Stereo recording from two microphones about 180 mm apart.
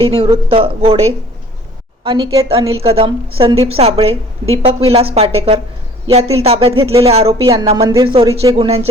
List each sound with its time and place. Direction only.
0.0 s a woman's voice: 30° right (ahead or behind)
2.0 s a woman's voice: 25° right (ahead or behind)
2.6 s a woman's voice: 35° right (ahead or behind)